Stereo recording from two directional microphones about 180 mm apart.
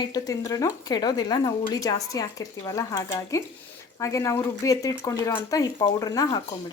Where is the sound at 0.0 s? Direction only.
20° left (ahead or behind).